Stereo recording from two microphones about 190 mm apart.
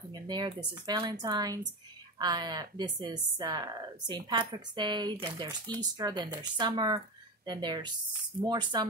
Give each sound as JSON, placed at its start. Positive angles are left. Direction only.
{"t": 0.1, "sound": "speech", "side_deg": -20}